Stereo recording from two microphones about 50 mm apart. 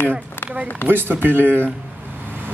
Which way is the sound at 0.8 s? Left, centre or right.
Right.